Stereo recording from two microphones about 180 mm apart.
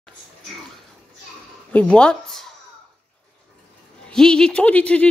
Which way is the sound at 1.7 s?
5° left (ahead or behind).